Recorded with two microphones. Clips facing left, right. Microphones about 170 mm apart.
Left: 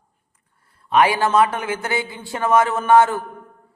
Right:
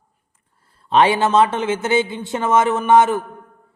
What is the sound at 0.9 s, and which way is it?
A man's voice, 25° right (ahead or behind).